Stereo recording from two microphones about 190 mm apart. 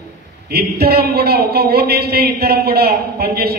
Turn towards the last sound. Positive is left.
turn(degrees=-55)  # may be behind; listen again after turning